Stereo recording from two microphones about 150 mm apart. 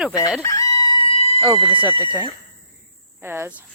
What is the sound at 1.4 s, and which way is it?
Speech, 30° right (ahead or behind).